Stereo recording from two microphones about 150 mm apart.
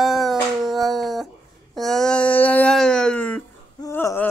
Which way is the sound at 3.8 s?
20° left (ahead or behind).